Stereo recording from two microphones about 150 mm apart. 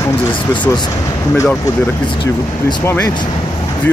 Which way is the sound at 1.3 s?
20° left (ahead or behind).